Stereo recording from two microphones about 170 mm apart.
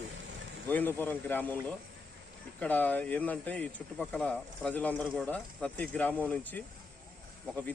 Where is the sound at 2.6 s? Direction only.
10° left (ahead or behind).